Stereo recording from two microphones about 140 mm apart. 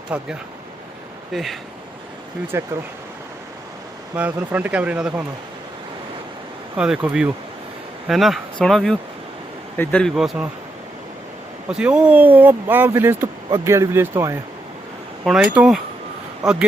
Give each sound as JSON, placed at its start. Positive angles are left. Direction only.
{"t": 0.1, "sound": "speech", "side_deg": -10}
{"t": 1.3, "sound": "speech", "side_deg": 0}
{"t": 2.5, "sound": "speech", "side_deg": -20}
{"t": 4.1, "sound": "speech", "side_deg": -10}
{"t": 6.7, "sound": "speech", "side_deg": -5}
{"t": 10.2, "sound": "speech", "side_deg": -5}
{"t": 11.7, "sound": "speech", "side_deg": -5}
{"t": 15.2, "sound": "speech", "side_deg": 0}